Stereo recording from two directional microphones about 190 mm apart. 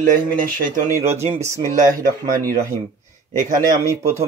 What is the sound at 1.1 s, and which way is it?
Speech, 15° right (ahead or behind).